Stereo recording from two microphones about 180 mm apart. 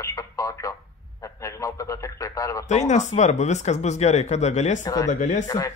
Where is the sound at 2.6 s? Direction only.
40° left (ahead or behind).